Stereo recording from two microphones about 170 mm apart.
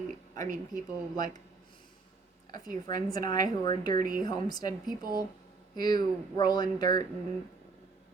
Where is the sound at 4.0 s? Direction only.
55° right (ahead or behind).